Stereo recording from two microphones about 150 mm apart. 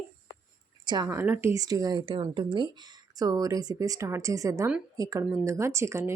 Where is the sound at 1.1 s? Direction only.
15° right (ahead or behind).